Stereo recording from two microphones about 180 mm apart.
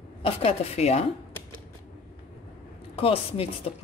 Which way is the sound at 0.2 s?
35° left (ahead or behind).